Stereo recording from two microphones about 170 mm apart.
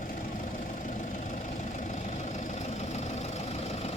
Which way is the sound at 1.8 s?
45° left (ahead or behind).